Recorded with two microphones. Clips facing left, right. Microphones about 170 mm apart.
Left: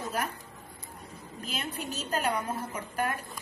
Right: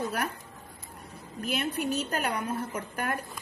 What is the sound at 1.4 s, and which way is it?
A woman's voice, 60° right (ahead or behind).